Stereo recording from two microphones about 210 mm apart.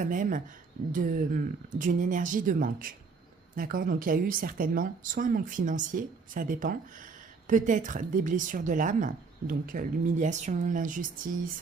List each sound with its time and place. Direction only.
0.0 s a woman's voice: 40° right (ahead or behind)